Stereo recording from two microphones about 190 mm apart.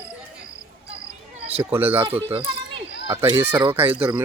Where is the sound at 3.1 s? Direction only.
20° right (ahead or behind).